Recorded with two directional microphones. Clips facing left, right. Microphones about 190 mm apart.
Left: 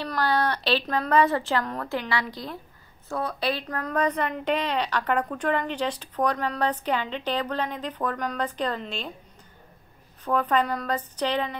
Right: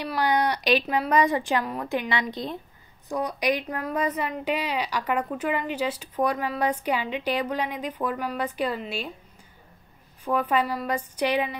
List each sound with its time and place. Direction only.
0.0 s a woman's voice: 15° right (ahead or behind)
10.2 s a woman's voice: 10° right (ahead or behind)